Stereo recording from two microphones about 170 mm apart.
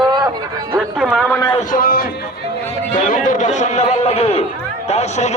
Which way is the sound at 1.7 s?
60° left (ahead or behind).